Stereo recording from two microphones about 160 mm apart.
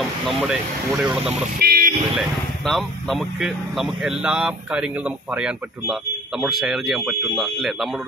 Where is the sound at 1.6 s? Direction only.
75° right (ahead or behind).